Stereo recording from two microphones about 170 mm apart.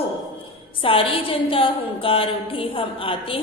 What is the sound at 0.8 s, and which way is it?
A woman's voice, 30° left (ahead or behind).